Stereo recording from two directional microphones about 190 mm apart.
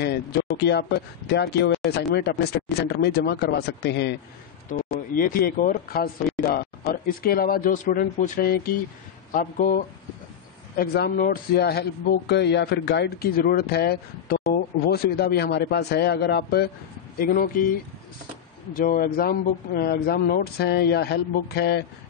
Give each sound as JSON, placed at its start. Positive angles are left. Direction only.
{"t": 0.0, "sound": "speech", "side_deg": 60}
{"t": 4.6, "sound": "speech", "side_deg": 45}
{"t": 10.8, "sound": "speech", "side_deg": 55}